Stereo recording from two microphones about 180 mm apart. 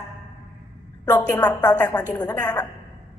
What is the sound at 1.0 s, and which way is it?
A woman's voice, 15° left (ahead or behind).